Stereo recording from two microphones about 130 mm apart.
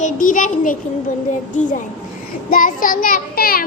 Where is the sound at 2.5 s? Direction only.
90° left.